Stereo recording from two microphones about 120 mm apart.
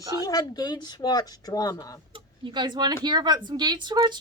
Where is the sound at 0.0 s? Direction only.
30° right (ahead or behind).